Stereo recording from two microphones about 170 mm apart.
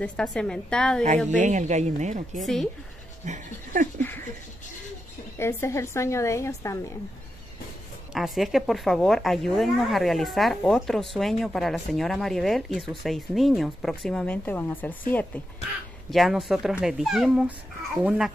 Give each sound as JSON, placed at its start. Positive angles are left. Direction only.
{"t": 0.0, "sound": "a woman's voice", "side_deg": 5}
{"t": 1.3, "sound": "a woman's voice", "side_deg": -45}
{"t": 2.4, "sound": "a woman's voice", "side_deg": 0}
{"t": 3.3, "sound": "a woman's voice", "side_deg": -50}
{"t": 5.4, "sound": "speech", "side_deg": 15}
{"t": 8.1, "sound": "a woman's voice", "side_deg": 0}
{"t": 16.1, "sound": "a woman's voice", "side_deg": 0}